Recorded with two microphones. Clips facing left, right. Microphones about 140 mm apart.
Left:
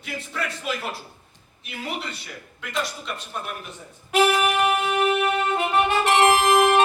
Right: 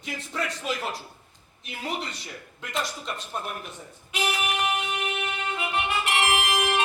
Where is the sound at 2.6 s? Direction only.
35° right (ahead or behind).